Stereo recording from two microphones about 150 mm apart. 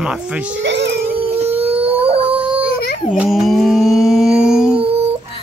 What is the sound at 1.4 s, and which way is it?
Howl, 45° right (ahead or behind).